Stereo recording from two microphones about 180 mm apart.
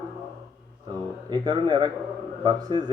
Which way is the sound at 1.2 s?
20° right (ahead or behind).